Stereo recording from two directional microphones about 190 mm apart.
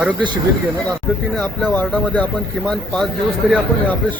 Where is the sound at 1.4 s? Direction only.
5° left (ahead or behind).